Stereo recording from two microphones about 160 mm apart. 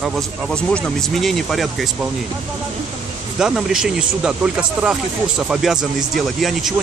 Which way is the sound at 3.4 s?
5° right (ahead or behind).